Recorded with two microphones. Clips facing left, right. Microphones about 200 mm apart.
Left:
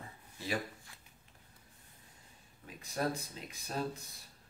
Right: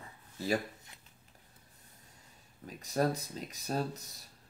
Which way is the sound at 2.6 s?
40° right (ahead or behind).